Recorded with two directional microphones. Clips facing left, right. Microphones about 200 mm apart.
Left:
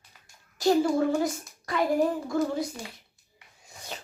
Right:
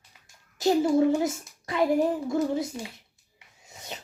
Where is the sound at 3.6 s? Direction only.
20° right (ahead or behind).